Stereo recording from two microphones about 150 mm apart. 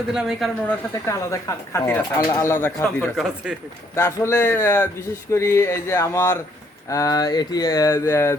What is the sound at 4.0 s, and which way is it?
Speech, 20° left (ahead or behind).